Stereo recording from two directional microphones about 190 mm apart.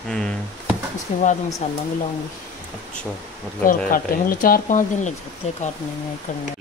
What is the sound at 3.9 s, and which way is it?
Speech, 50° left (ahead or behind).